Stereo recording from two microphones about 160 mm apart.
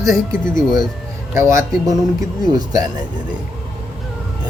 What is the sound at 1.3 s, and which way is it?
Speech, 20° right (ahead or behind).